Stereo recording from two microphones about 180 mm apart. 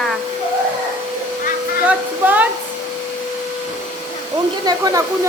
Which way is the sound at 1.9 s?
10° right (ahead or behind).